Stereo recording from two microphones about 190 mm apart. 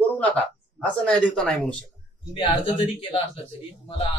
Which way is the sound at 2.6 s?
30° left (ahead or behind).